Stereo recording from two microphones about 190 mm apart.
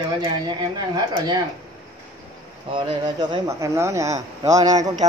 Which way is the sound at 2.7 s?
25° right (ahead or behind).